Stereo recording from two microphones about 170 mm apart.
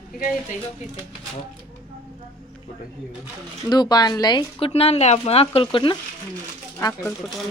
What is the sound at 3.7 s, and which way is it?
Speech, 25° left (ahead or behind).